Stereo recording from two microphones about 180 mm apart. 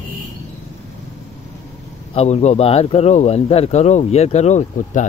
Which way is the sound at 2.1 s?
35° left (ahead or behind).